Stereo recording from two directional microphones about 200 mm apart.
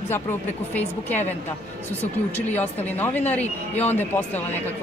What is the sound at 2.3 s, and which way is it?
Speech, 10° left (ahead or behind).